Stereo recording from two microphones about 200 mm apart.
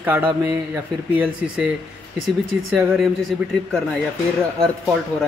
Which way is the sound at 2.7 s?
5° right (ahead or behind).